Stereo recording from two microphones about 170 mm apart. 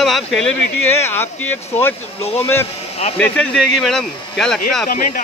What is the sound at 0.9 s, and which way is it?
Speech, 15° left (ahead or behind).